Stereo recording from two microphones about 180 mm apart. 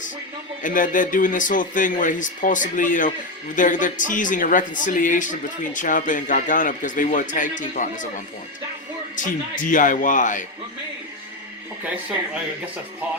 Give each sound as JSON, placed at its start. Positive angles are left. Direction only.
{"t": 0.6, "sound": "a man's voice", "side_deg": 50}
{"t": 9.1, "sound": "a man's voice", "side_deg": 45}